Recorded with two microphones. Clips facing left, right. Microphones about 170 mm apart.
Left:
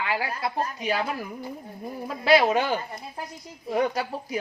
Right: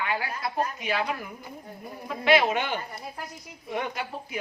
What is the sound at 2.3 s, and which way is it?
Speech, 35° left (ahead or behind).